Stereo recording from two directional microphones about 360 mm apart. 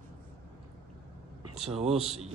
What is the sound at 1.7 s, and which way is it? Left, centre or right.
Speech, centre.